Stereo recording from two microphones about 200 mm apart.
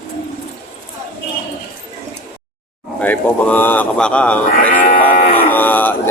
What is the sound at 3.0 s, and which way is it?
Speech, 10° left (ahead or behind).